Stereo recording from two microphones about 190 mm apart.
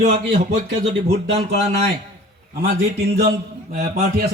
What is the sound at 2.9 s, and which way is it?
Speech, 55° right (ahead or behind).